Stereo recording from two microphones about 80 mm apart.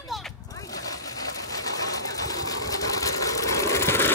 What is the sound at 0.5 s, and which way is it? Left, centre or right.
Zipper, left.